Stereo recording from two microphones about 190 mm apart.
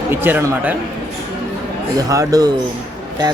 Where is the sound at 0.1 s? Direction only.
10° right (ahead or behind).